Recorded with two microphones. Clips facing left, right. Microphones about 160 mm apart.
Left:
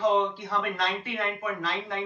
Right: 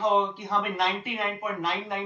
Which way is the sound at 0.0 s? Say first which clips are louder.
Even; 20° right (ahead or behind).